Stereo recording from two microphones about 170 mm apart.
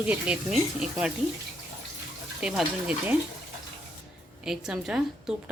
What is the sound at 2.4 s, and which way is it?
Speech, 5° right (ahead or behind).